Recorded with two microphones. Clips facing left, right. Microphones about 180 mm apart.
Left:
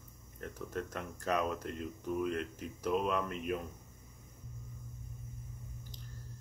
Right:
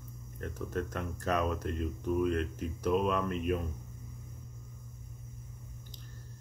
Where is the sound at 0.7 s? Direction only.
15° left (ahead or behind).